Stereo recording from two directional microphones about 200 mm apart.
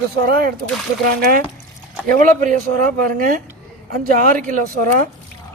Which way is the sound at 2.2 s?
40° right (ahead or behind).